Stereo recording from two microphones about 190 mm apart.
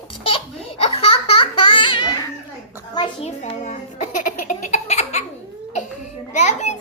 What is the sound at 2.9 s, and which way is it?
Music, 30° left (ahead or behind).